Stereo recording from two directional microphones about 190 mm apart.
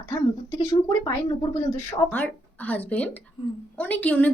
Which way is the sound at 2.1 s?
10° left (ahead or behind).